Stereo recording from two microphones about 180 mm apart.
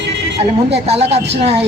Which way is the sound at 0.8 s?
35° right (ahead or behind).